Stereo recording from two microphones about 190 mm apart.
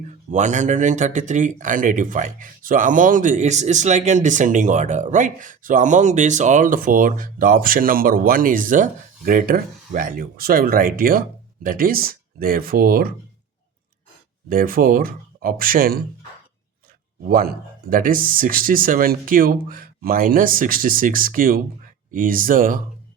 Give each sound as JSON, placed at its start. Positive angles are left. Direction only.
{"t": 0.3, "sound": "speech", "side_deg": -40}
{"t": 14.5, "sound": "speech", "side_deg": -50}
{"t": 17.2, "sound": "speech", "side_deg": -50}